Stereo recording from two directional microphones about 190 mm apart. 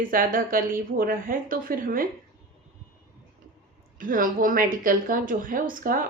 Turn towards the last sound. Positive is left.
turn(degrees=-50)  # may be behind; listen again after turning